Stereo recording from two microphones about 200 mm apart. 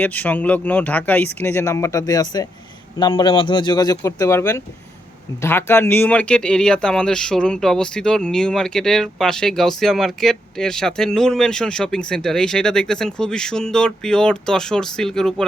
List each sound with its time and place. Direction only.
0.0 s speech: 10° left (ahead or behind)